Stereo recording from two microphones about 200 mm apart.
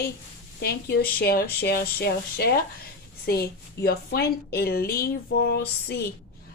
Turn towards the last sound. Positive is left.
turn(degrees=55)  # may be behind; listen again after turning